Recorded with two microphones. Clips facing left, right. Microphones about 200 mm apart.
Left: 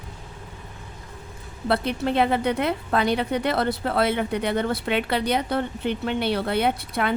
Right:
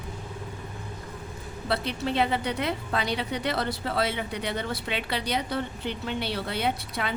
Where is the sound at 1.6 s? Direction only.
55° left (ahead or behind).